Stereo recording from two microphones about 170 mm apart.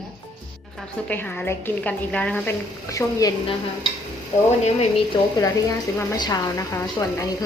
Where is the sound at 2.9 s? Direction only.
20° left (ahead or behind).